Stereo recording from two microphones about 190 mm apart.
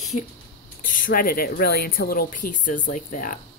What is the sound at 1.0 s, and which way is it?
Speech, 50° left (ahead or behind).